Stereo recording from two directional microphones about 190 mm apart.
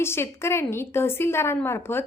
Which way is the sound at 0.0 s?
15° left (ahead or behind).